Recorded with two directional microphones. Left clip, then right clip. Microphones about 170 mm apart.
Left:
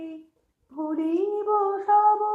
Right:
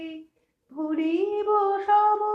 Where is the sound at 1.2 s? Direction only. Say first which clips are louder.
Even; 40° right (ahead or behind).